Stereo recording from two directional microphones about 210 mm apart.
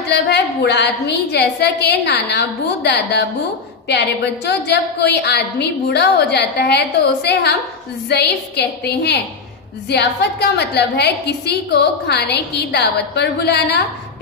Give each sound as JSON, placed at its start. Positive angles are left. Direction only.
{"t": 0.1, "sound": "a woman's voice", "side_deg": 55}